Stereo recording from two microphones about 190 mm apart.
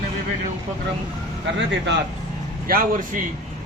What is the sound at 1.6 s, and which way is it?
Speech, 70° right (ahead or behind).